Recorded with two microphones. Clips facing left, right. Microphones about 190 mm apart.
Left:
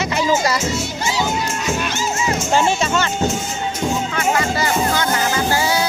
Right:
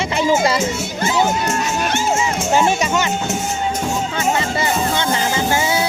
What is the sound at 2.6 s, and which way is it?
Speech, 15° right (ahead or behind).